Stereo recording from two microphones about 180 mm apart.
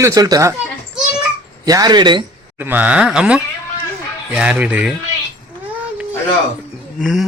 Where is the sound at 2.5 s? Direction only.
10° right (ahead or behind).